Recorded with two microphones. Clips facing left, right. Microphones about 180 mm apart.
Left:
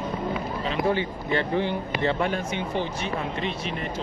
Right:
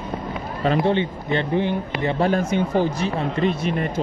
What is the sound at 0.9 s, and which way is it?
Speech, 25° right (ahead or behind).